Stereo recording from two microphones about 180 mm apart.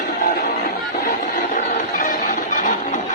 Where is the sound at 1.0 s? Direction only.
50° left (ahead or behind).